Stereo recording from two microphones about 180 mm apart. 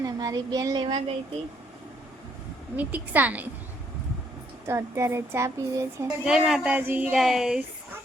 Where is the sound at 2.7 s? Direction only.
10° right (ahead or behind).